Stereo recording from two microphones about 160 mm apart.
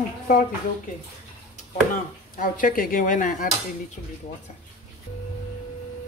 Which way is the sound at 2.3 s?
60° left (ahead or behind).